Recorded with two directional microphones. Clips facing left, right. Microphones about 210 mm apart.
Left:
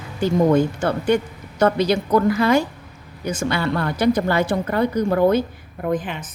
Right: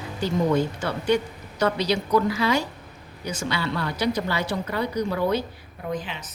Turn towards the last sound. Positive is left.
turn(degrees=50)  # may be behind; listen again after turning